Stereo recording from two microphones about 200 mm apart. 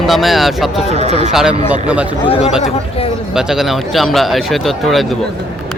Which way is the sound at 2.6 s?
30° left (ahead or behind).